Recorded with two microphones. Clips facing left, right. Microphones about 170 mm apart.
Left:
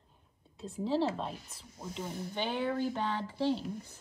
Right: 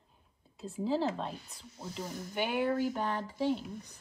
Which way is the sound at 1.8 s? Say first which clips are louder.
Left 1 dB; 35° right (ahead or behind).